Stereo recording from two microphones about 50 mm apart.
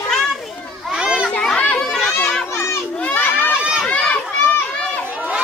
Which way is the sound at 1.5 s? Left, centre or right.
Left.